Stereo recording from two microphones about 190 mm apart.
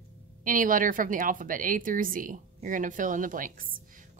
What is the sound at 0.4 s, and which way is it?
A woman's voice, 45° right (ahead or behind).